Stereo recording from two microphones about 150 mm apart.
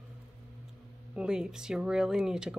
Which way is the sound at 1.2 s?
5° right (ahead or behind).